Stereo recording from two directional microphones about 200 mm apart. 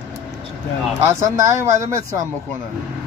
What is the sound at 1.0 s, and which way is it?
Speech, 15° right (ahead or behind).